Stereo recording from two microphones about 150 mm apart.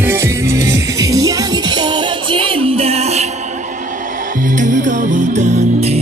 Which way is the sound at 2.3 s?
40° right (ahead or behind).